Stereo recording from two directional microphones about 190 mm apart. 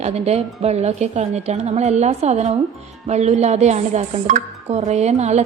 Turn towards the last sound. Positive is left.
turn(degrees=-35)  # may be behind; listen again after turning